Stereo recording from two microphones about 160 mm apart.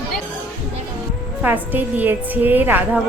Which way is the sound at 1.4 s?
10° right (ahead or behind).